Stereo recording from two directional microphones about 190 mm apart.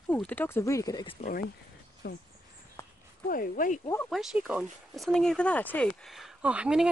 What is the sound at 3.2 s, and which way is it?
Speech, 50° left (ahead or behind).